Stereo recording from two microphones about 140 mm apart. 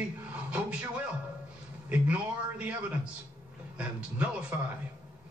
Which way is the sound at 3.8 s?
10° right (ahead or behind).